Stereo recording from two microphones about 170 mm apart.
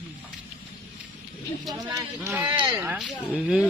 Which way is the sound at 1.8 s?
20° right (ahead or behind).